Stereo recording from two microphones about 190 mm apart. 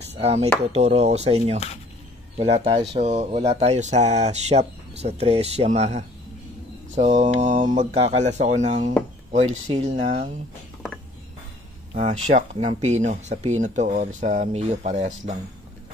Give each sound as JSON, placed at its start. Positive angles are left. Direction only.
{"t": 0.0, "sound": "speech", "side_deg": -35}
{"t": 11.9, "sound": "speech", "side_deg": -35}